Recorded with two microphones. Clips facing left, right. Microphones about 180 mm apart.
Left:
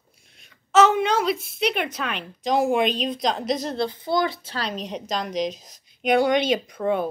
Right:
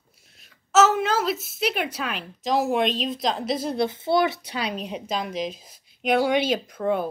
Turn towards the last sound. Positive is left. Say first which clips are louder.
# left 1 dB
turn(degrees=0)  # may be behind; listen again after turning